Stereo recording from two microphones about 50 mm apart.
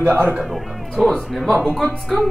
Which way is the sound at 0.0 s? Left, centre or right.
Right.